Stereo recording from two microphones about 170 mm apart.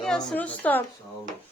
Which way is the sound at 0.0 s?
5° left (ahead or behind).